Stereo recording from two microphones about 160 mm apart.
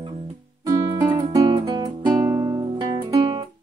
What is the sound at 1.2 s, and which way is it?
Music, 25° right (ahead or behind).